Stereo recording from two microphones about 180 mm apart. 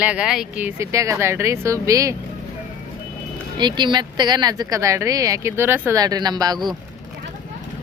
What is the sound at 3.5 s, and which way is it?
Speech, 25° right (ahead or behind).